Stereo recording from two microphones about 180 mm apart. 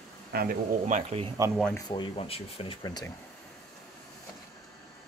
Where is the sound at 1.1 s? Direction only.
35° right (ahead or behind).